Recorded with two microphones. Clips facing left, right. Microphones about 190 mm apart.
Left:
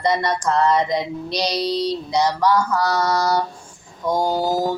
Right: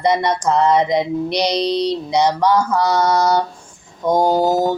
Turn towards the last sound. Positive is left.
turn(degrees=-20)  # may be behind; listen again after turning